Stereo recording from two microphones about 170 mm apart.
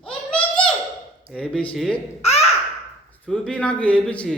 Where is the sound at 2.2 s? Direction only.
40° left (ahead or behind).